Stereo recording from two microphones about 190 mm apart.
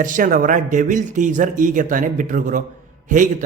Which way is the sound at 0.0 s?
45° right (ahead or behind).